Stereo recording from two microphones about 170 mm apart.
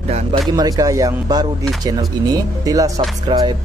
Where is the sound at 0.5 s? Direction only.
20° right (ahead or behind).